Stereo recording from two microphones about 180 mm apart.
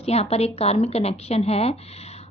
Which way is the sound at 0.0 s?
35° left (ahead or behind).